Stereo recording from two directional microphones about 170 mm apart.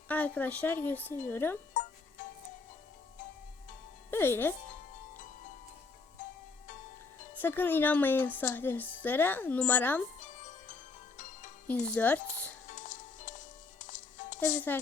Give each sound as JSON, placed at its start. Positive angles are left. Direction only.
{"t": 0.1, "sound": "a woman's voice", "side_deg": 10}
{"t": 1.7, "sound": "music", "side_deg": 50}
{"t": 4.1, "sound": "a woman's voice", "side_deg": 15}
{"t": 7.4, "sound": "a woman's voice", "side_deg": 10}
{"t": 10.2, "sound": "music", "side_deg": 45}
{"t": 11.9, "sound": "speech", "side_deg": 10}
{"t": 12.6, "sound": "music", "side_deg": 45}